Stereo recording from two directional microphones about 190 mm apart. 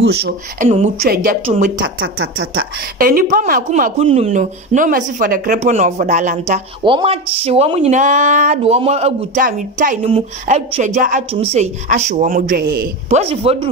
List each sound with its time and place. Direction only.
0.0 s speech: 60° right (ahead or behind)
0.7 s speech: 35° right (ahead or behind)
1.0 s speech: 50° right (ahead or behind)
1.4 s speech: 35° right (ahead or behind)
1.8 s speech: 90° right
3.0 s speech: 50° right (ahead or behind)
6.8 s speech: 25° right (ahead or behind); by 9.9 s 45° right (ahead or behind)
10.0 s speech: 35° right (ahead or behind); by 12.8 s 50° right (ahead or behind)
13.1 s speech: 30° right (ahead or behind)